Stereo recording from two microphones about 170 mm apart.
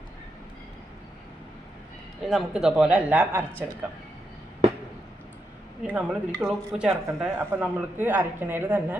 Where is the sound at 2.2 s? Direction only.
5° right (ahead or behind).